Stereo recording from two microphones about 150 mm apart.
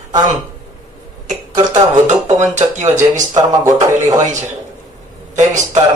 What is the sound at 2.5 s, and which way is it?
Speech, 50° right (ahead or behind).